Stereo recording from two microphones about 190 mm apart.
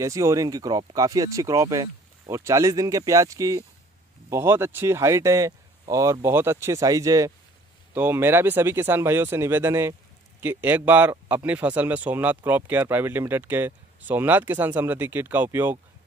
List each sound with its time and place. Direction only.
0.0 s speech: 15° right (ahead or behind)